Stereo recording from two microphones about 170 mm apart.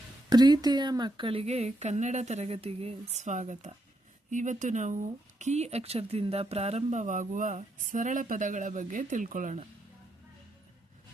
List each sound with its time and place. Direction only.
0.3 s speech: 25° right (ahead or behind); by 9.6 s 50° right (ahead or behind)